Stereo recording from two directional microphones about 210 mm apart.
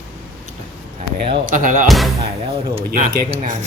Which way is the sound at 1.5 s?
40° right (ahead or behind).